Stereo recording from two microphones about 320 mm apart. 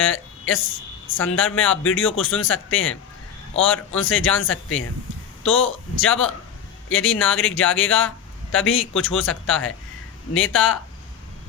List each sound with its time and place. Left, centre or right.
0.1 s a man's voice: left